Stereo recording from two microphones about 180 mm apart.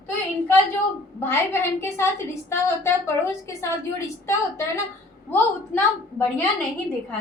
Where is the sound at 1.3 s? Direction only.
15° left (ahead or behind).